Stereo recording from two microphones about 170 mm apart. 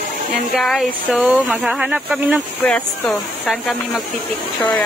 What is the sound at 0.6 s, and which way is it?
Speech, centre (ahead or behind).